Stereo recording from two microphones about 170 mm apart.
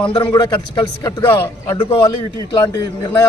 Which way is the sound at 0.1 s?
25° left (ahead or behind).